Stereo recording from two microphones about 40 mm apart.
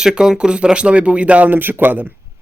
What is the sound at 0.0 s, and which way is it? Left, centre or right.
Speech, centre.